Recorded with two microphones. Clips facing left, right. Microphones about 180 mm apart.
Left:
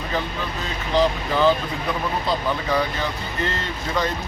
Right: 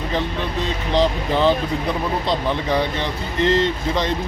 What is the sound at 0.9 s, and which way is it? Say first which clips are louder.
Speech: right 1 dB; 30° right (ahead or behind).